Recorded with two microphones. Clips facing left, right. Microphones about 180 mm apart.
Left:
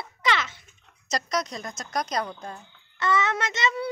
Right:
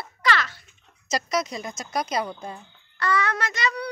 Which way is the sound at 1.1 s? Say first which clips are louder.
Right 2 dB; 5° right (ahead or behind).